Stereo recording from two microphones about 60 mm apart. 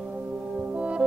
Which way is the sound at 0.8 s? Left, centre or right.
Centre.